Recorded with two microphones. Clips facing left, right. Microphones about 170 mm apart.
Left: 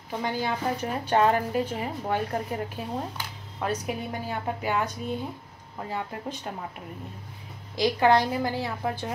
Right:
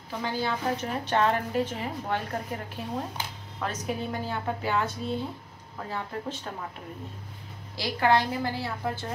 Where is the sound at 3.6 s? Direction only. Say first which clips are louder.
Left 2 dB; 10° left (ahead or behind).